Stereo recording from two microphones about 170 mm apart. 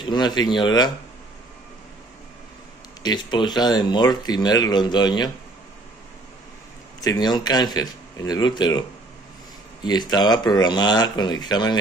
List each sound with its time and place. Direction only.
0.0 s speech: 25° left (ahead or behind)
3.0 s speech: 25° left (ahead or behind)
7.0 s speech: 25° left (ahead or behind)
9.8 s speech: 25° left (ahead or behind)